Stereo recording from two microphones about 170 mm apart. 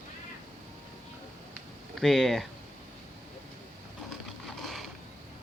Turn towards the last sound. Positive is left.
turn(degrees=0)  # may be behind; listen again after turning